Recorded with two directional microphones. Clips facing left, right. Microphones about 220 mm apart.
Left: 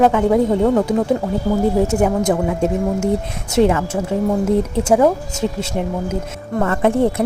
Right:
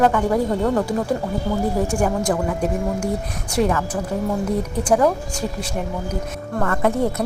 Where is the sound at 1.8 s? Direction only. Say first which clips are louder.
Left 5 dB; 20° left (ahead or behind).